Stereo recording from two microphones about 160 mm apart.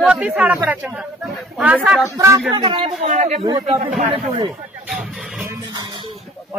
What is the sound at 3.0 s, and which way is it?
Speech, 45° right (ahead or behind).